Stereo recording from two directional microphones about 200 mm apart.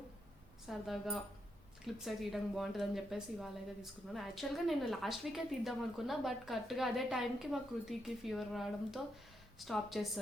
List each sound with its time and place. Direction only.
0.7 s a woman's voice: centre (ahead or behind)